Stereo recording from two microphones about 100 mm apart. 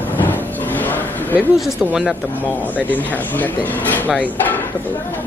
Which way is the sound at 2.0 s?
15° left (ahead or behind).